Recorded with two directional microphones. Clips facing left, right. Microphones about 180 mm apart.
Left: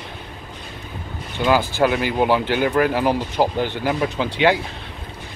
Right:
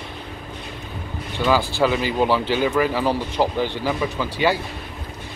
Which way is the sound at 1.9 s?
55° left (ahead or behind).